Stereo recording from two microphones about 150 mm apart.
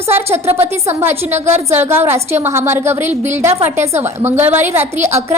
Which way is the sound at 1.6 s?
15° right (ahead or behind).